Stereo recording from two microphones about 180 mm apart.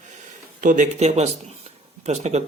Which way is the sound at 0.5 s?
45° right (ahead or behind).